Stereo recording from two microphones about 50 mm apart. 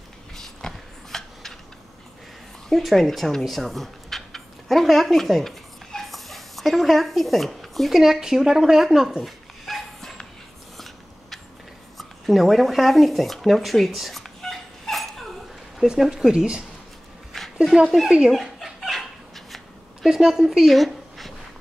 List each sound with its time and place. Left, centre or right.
0.6 s a sound: centre
2.7 s speech: centre
8.0 s a woman's voice: centre
9.2 s dog: centre
12.0 s a sound: centre
15.8 s a woman's voice: centre
17.3 s dog: centre
18.0 s a woman's voice: centre
18.3 s dog: centre
20.1 s speech: centre